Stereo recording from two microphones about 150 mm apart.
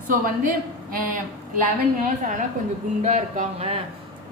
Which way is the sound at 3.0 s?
50° right (ahead or behind).